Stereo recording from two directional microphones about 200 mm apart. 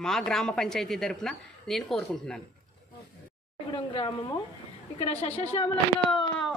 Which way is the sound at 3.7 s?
20° left (ahead or behind).